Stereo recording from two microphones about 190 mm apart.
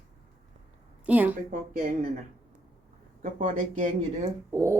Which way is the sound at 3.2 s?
40° right (ahead or behind).